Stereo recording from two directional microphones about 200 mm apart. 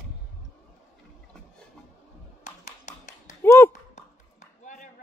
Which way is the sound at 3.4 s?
10° left (ahead or behind).